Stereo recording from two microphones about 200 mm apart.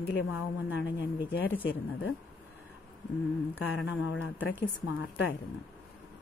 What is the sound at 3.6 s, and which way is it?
A woman's voice, 75° left (ahead or behind).